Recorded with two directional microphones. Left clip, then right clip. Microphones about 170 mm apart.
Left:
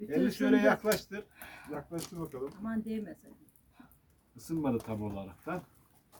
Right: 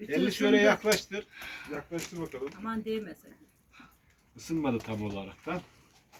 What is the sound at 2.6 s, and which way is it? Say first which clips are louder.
Speech: right 5 dB; 65° left (ahead or behind).